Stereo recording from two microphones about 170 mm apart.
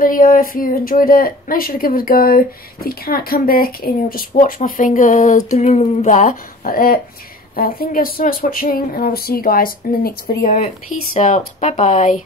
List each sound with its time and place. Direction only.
0.0 s speech: 55° left (ahead or behind)